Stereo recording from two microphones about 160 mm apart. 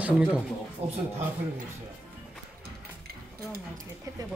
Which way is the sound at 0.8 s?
40° right (ahead or behind).